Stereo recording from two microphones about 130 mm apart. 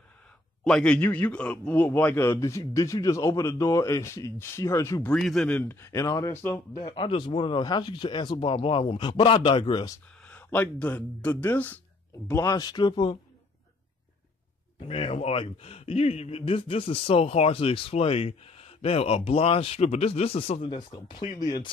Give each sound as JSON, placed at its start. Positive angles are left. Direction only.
{"t": 0.7, "sound": "speech", "side_deg": 5}
{"t": 5.0, "sound": "speech", "side_deg": 5}
{"t": 6.8, "sound": "speech", "side_deg": 40}
{"t": 10.2, "sound": "speech", "side_deg": 10}
{"t": 12.3, "sound": "speech", "side_deg": 25}
{"t": 14.8, "sound": "speech", "side_deg": 45}
{"t": 20.7, "sound": "speech", "side_deg": 35}